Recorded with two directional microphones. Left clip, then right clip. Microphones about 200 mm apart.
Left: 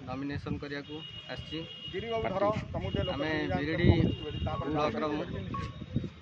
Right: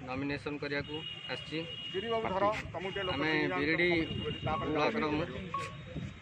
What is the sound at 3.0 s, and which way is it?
Speech, 5° left (ahead or behind).